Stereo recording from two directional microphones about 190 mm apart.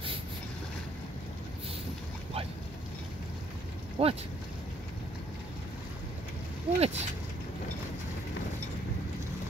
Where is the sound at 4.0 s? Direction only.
30° right (ahead or behind).